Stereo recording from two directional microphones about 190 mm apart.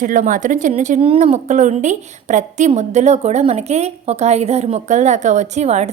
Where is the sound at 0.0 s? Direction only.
45° right (ahead or behind).